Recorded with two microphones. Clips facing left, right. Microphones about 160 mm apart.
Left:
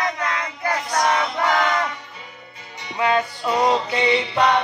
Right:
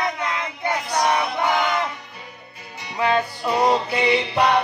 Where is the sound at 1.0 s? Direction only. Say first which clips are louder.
Even; 15° right (ahead or behind).